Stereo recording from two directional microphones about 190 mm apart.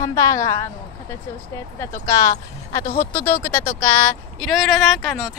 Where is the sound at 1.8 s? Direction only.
15° left (ahead or behind); by 5.3 s centre (ahead or behind).